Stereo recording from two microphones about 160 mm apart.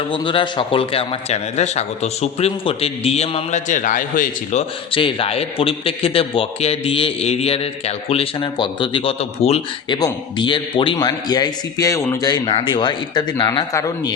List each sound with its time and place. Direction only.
0.1 s a man's voice: 30° left (ahead or behind); by 4.6 s 55° left (ahead or behind)
4.9 s a man's voice: 35° left (ahead or behind)